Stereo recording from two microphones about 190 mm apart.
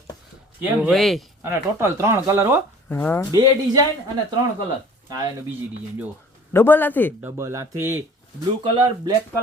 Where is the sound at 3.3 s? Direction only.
20° right (ahead or behind).